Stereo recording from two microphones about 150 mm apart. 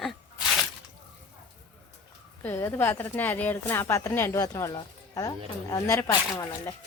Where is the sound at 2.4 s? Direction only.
15° left (ahead or behind).